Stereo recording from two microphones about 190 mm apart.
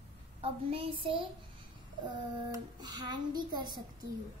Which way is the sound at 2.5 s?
20° right (ahead or behind).